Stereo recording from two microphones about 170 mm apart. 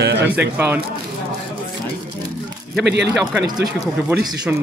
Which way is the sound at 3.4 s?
25° right (ahead or behind).